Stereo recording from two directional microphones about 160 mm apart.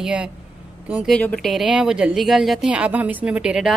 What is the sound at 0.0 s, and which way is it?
A woman's voice, 5° right (ahead or behind).